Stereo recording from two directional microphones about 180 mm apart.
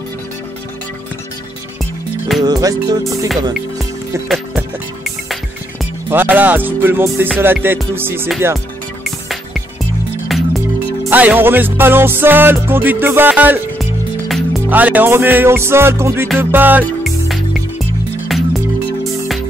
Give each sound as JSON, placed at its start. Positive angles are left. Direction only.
{"t": 2.4, "sound": "music", "side_deg": -20}
{"t": 6.0, "sound": "music", "side_deg": -10}
{"t": 9.0, "sound": "music", "side_deg": 0}